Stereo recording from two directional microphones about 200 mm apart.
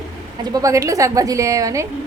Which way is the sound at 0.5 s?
15° right (ahead or behind).